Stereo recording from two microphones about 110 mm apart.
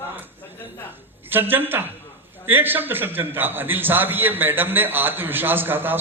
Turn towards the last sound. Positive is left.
turn(degrees=-20)  # may be behind; listen again after turning